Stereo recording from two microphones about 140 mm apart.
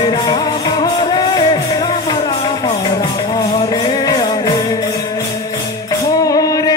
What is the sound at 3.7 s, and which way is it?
Music, 30° left (ahead or behind).